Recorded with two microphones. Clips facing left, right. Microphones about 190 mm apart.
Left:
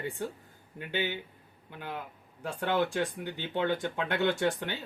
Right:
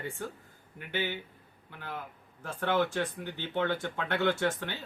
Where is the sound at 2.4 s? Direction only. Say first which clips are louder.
Even; 15° left (ahead or behind).